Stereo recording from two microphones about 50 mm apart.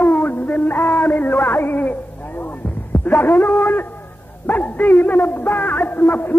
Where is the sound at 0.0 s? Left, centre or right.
Left.